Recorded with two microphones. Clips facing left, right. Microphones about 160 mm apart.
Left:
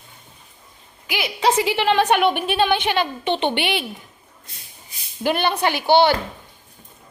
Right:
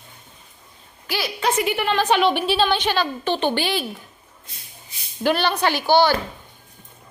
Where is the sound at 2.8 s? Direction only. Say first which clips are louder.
Left 1 dB; 20° left (ahead or behind).